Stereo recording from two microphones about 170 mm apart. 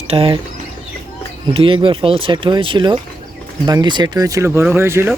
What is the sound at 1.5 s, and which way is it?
Speech, 30° right (ahead or behind).